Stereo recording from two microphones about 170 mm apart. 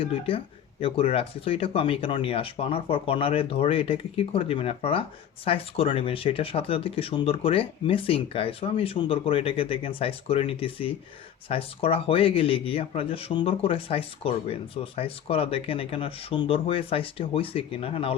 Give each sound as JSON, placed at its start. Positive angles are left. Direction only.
{"t": 0.0, "sound": "speech", "side_deg": 35}